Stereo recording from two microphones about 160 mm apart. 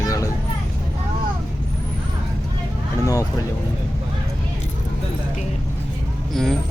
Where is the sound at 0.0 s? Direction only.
20° left (ahead or behind).